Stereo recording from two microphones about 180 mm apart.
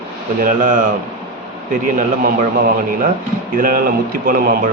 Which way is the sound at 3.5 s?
50° right (ahead or behind).